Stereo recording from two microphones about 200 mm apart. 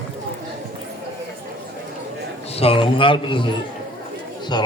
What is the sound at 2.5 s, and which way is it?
Speech, 30° left (ahead or behind).